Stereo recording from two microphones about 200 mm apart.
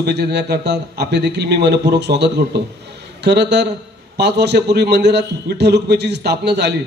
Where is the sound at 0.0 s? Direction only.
55° right (ahead or behind).